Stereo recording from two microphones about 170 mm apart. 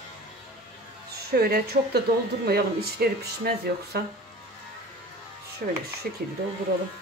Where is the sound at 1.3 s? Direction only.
65° right (ahead or behind).